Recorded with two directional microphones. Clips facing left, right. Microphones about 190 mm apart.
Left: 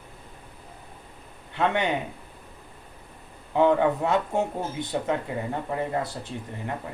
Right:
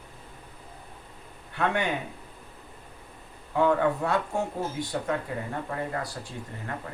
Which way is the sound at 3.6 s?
20° left (ahead or behind).